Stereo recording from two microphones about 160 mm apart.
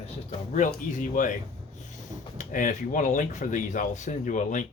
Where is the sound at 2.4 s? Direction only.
55° left (ahead or behind).